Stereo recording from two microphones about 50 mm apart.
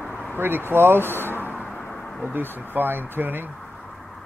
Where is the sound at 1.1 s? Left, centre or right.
Left.